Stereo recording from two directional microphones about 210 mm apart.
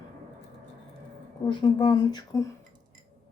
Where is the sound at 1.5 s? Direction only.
20° left (ahead or behind).